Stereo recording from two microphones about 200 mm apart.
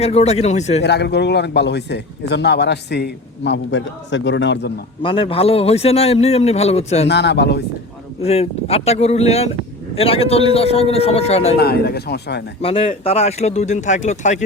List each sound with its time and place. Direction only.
0.0 s a man's voice: 30° left (ahead or behind)
0.8 s a man's voice: 55° left (ahead or behind)
5.0 s a man's voice: 25° left (ahead or behind)
7.1 s a man's voice: 55° left (ahead or behind)
8.2 s a man's voice: 30° left (ahead or behind)
11.5 s speech: 50° left (ahead or behind)
12.6 s a man's voice: 30° left (ahead or behind)